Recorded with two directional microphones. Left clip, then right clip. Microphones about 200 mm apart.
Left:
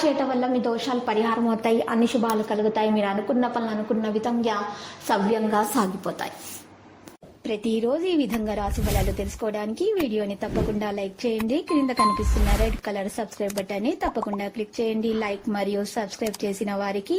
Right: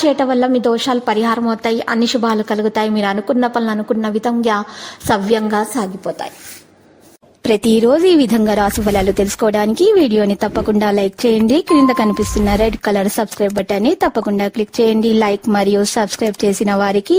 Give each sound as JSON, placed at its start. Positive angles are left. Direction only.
{"t": 0.2, "sound": "a woman's voice", "side_deg": -45}
{"t": 1.5, "sound": "a woman's voice", "side_deg": -20}
{"t": 5.5, "sound": "a woman's voice", "side_deg": -15}
{"t": 7.4, "sound": "speech", "side_deg": -65}